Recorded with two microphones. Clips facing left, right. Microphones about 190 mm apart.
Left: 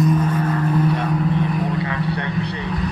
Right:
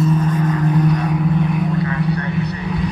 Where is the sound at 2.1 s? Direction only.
30° left (ahead or behind).